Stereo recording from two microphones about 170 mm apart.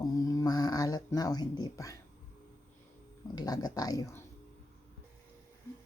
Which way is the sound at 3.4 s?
20° left (ahead or behind).